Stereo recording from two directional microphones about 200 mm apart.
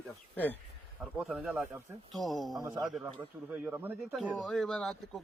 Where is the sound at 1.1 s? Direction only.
5° right (ahead or behind).